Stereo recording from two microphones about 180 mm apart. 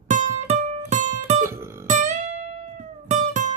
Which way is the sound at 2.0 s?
40° right (ahead or behind).